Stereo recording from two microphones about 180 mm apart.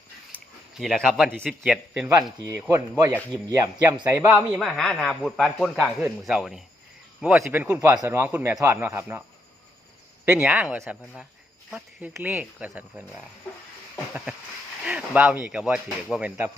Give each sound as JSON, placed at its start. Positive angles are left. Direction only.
{"t": 0.7, "sound": "a man's voice", "side_deg": 0}
{"t": 4.5, "sound": "a man's voice", "side_deg": 0}
{"t": 10.2, "sound": "a man's voice", "side_deg": -5}
{"t": 14.8, "sound": "a man's voice", "side_deg": -5}